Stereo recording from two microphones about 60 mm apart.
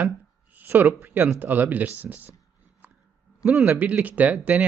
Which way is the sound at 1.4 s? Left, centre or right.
Right.